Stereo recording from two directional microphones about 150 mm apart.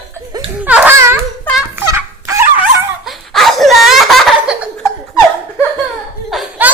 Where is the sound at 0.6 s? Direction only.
10° right (ahead or behind).